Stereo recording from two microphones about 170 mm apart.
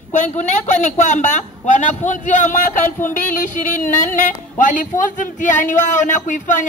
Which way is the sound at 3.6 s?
50° left (ahead or behind).